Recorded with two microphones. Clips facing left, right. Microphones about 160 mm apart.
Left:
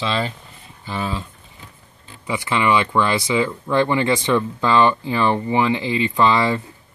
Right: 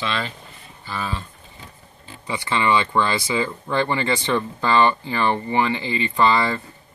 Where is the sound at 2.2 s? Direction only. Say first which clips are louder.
Left 2 dB; 10° left (ahead or behind).